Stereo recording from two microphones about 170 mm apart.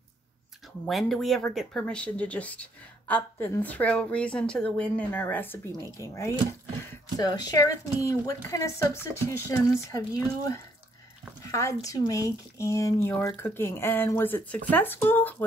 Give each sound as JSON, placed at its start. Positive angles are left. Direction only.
{"t": 0.8, "sound": "speech", "side_deg": 0}